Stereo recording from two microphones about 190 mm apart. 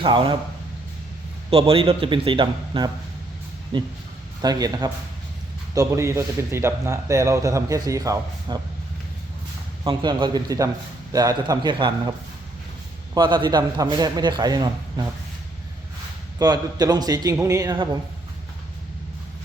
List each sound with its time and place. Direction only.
0.0 s a man's voice: 25° right (ahead or behind)
1.5 s a man's voice: 30° right (ahead or behind)
9.8 s a man's voice: 25° right (ahead or behind)
13.1 s a man's voice: 25° right (ahead or behind)
16.4 s a man's voice: 20° right (ahead or behind)